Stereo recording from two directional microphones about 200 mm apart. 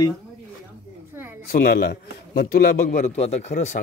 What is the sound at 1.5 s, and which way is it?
A man's voice, 50° left (ahead or behind).